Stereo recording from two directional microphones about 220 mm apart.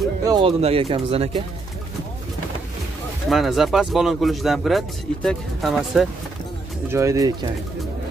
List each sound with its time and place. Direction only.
0.3 s speech: 25° right (ahead or behind)
3.3 s speech: centre (ahead or behind)
6.9 s speech: 15° right (ahead or behind)